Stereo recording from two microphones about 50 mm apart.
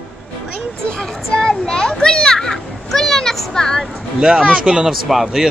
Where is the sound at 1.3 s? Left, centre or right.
Centre.